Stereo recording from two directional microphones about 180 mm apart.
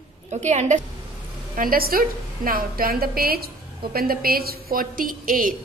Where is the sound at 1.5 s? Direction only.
50° right (ahead or behind).